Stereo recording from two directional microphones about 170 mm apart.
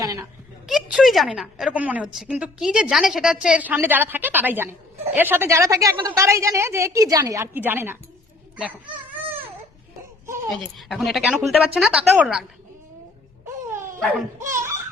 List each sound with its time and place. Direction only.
0.0 s speech: 20° right (ahead or behind)
0.7 s a woman's voice: centre (ahead or behind)
8.5 s dog: 10° right (ahead or behind)
10.2 s a sound: 15° right (ahead or behind)
10.5 s speech: centre (ahead or behind)
14.3 s giggle: 15° right (ahead or behind)